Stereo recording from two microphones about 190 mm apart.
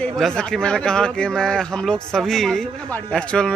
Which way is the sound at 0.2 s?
5° left (ahead or behind).